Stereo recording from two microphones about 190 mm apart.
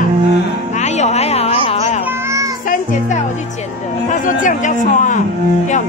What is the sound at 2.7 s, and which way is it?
Music, 45° left (ahead or behind).